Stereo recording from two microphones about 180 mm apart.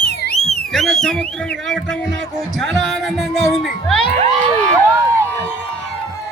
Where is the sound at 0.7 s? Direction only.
5° left (ahead or behind).